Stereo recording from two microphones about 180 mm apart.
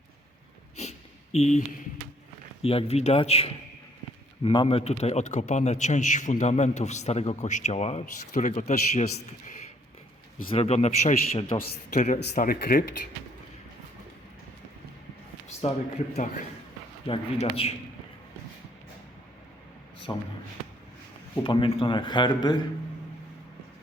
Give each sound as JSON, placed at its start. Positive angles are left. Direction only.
{"t": 0.8, "sound": "a sound", "side_deg": 40}
{"t": 2.6, "sound": "a man's voice", "side_deg": 35}
{"t": 10.5, "sound": "a man's voice", "side_deg": 35}
{"t": 15.6, "sound": "a man's voice", "side_deg": 35}
{"t": 17.1, "sound": "a man's voice", "side_deg": 30}
{"t": 20.1, "sound": "speech", "side_deg": 25}
{"t": 21.4, "sound": "speech", "side_deg": 30}